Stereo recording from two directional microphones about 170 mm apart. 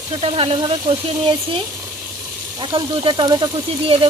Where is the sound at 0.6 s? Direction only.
25° right (ahead or behind).